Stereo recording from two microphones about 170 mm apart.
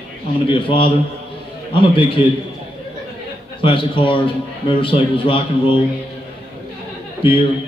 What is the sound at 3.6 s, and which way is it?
A man's voice, 30° left (ahead or behind).